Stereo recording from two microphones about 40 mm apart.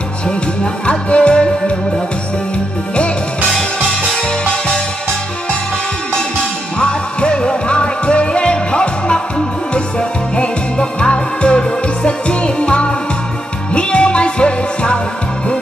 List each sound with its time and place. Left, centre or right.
0.8 s music: left
4.1 s music: centre
6.8 s music: left